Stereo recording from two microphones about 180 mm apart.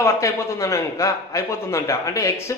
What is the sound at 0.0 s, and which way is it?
A man's voice, 15° left (ahead or behind).